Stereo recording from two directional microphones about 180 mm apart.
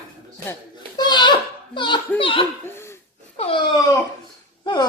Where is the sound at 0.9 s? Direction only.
25° left (ahead or behind).